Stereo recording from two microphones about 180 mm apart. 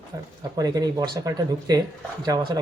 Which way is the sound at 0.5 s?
20° right (ahead or behind).